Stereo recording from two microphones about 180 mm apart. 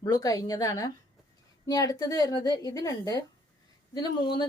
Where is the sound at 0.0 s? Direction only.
20° left (ahead or behind).